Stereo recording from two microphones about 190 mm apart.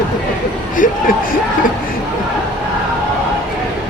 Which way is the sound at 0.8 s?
45° left (ahead or behind).